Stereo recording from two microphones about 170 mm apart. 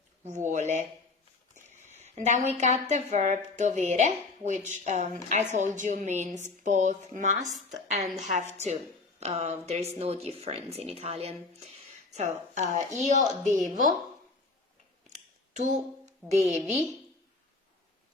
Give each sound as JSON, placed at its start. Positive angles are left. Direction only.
{"t": 0.3, "sound": "a woman's voice", "side_deg": -45}
{"t": 15.6, "sound": "a woman's voice", "side_deg": -45}